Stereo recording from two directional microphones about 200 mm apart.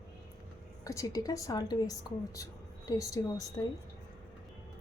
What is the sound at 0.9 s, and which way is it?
A woman's voice, 15° left (ahead or behind).